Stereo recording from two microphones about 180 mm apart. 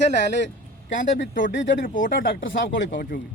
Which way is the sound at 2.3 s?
90° left.